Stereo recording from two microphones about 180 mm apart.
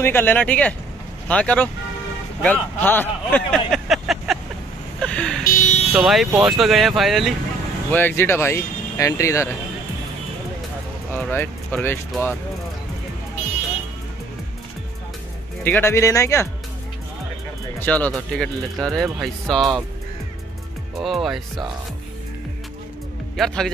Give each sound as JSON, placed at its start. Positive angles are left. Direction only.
{"t": 0.0, "sound": "speech", "side_deg": 10}
{"t": 5.0, "sound": "vehicle", "side_deg": 5}
{"t": 5.4, "sound": "buzzer", "side_deg": 45}
{"t": 5.9, "sound": "speech", "side_deg": 0}
{"t": 7.9, "sound": "speech", "side_deg": 10}
{"t": 11.1, "sound": "speech", "side_deg": 10}
{"t": 15.6, "sound": "speech", "side_deg": 10}
{"t": 17.7, "sound": "speech", "side_deg": 10}
{"t": 21.0, "sound": "speech", "side_deg": 0}
{"t": 23.3, "sound": "speech", "side_deg": 0}